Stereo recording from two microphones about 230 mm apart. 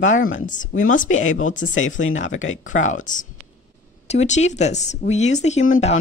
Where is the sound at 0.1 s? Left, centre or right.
Left.